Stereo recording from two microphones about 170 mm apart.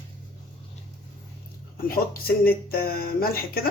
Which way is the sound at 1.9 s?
60° left (ahead or behind).